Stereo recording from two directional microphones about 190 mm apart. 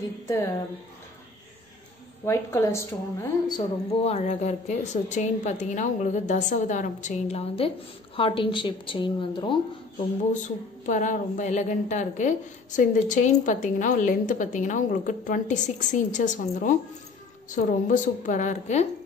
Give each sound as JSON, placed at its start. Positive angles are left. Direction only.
{"t": 0.3, "sound": "a woman's voice", "side_deg": 15}
{"t": 2.2, "sound": "speech", "side_deg": 15}
{"t": 10.9, "sound": "speech", "side_deg": 40}